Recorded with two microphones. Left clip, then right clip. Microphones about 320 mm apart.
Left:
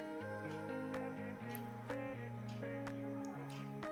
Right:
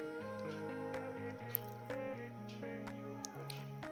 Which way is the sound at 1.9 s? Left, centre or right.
Centre.